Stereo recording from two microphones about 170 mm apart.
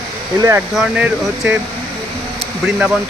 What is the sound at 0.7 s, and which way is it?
Speech, 5° right (ahead or behind).